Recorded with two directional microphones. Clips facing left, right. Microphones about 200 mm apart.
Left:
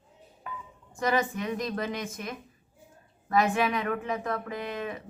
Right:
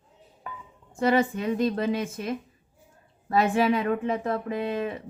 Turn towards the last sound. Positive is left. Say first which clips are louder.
# right 6 dB
turn(degrees=-30)  # may be behind; listen again after turning